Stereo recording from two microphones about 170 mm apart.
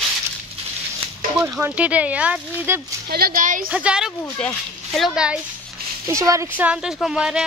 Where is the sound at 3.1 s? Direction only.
60° right (ahead or behind).